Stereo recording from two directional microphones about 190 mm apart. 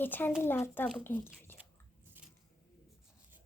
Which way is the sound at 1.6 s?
5° right (ahead or behind).